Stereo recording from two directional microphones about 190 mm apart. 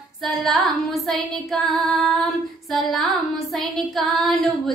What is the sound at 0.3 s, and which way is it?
Child singing, centre (ahead or behind).